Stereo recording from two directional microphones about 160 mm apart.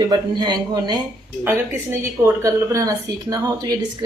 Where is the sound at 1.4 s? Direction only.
15° right (ahead or behind).